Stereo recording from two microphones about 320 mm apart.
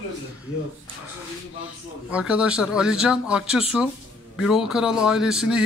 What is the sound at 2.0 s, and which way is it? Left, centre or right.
A man's voice, centre.